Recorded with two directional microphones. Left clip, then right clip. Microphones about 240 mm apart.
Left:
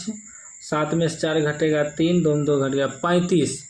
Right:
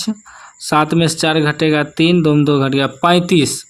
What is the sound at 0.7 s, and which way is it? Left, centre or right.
Speech, right.